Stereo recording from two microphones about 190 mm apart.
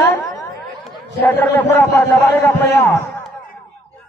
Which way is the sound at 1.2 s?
10° left (ahead or behind).